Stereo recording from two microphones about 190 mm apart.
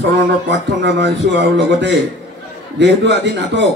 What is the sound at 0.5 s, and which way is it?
A man's voice, 65° right (ahead or behind).